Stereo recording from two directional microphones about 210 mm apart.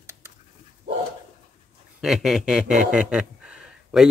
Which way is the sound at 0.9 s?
55° right (ahead or behind).